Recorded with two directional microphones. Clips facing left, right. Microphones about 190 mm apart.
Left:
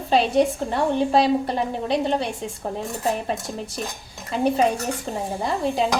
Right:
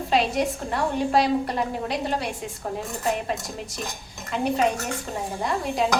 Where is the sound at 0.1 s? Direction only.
30° left (ahead or behind).